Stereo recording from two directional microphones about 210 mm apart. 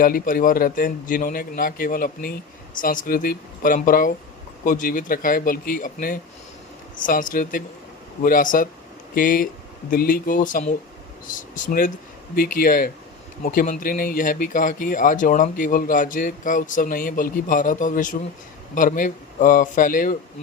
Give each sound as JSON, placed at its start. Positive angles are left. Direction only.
{"t": 0.0, "sound": "speech", "side_deg": 40}